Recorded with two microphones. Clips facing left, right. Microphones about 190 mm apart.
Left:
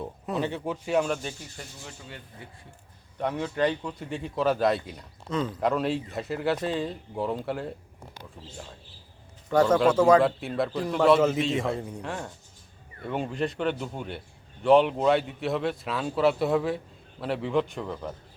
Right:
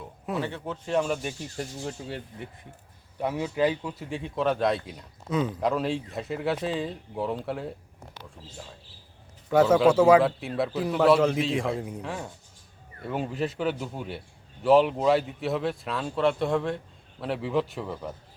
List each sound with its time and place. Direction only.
0.3 s speech: 15° left (ahead or behind)
1.5 s speech: 40° right (ahead or behind)
3.2 s a man's voice: 10° right (ahead or behind)
9.5 s a man's voice: 5° right (ahead or behind)